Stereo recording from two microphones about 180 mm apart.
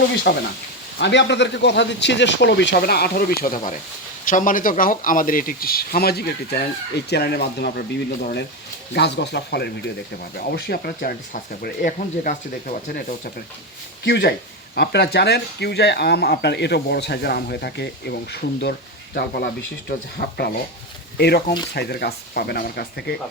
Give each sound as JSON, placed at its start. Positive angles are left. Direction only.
{"t": 0.3, "sound": "speech", "side_deg": 60}
{"t": 0.9, "sound": "speech", "side_deg": 75}
{"t": 14.0, "sound": "speech", "side_deg": 65}